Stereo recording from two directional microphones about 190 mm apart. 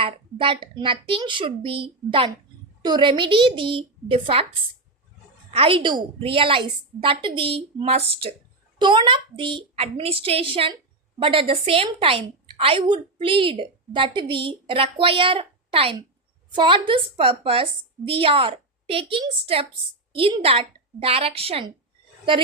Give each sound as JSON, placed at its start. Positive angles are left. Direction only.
{"t": 0.0, "sound": "a woman's voice", "side_deg": -25}
{"t": 5.5, "sound": "a woman's voice", "side_deg": -30}